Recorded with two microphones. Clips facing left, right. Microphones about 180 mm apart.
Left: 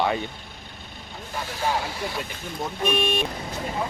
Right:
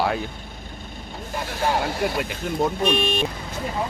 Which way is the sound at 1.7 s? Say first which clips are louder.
Right 5 dB; 60° right (ahead or behind).